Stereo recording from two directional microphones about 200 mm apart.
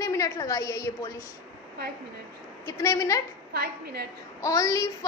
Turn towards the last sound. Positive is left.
turn(degrees=15)  # may be behind; listen again after turning